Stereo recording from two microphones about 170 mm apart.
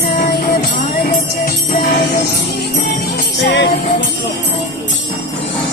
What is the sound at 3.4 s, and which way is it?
Music, 85° left.